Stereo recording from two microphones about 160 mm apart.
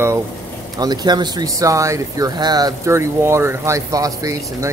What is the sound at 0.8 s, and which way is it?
Speech, 25° right (ahead or behind).